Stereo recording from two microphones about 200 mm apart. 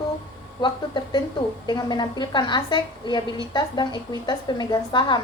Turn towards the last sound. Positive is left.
turn(degrees=20)  # may be behind; listen again after turning